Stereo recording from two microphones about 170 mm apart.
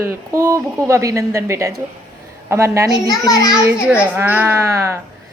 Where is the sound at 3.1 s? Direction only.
20° left (ahead or behind).